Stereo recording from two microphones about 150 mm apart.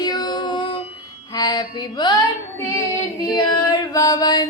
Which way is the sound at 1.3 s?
25° left (ahead or behind).